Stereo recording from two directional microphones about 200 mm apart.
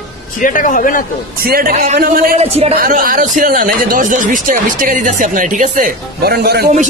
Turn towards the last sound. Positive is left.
turn(degrees=-50)  # may be behind; listen again after turning